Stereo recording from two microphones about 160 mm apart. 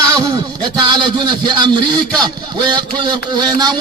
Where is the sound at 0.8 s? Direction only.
30° right (ahead or behind).